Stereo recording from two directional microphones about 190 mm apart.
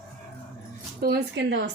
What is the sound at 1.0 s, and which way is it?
Speech, 60° right (ahead or behind).